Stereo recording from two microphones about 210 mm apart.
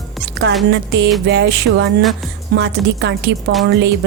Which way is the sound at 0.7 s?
55° right (ahead or behind).